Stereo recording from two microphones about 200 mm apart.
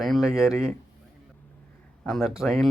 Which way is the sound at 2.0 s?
Centre (ahead or behind).